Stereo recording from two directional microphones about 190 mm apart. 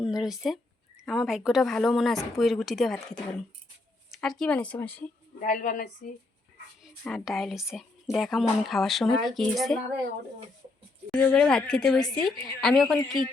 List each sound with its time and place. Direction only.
0.0 s speech: 5° right (ahead or behind)
5.4 s a woman's voice: 45° left (ahead or behind)
7.0 s speech: centre (ahead or behind)
11.1 s speech: 5° left (ahead or behind)